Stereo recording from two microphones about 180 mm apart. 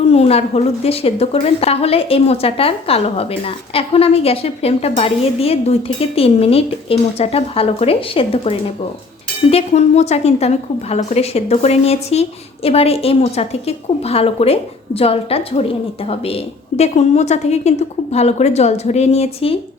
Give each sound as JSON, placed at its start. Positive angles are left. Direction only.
{"t": 0.1, "sound": "a woman's voice", "side_deg": 35}